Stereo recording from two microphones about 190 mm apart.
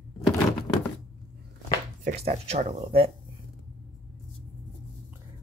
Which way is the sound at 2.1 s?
35° right (ahead or behind).